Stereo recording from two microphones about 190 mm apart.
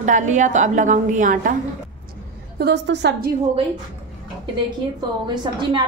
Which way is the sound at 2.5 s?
60° right (ahead or behind).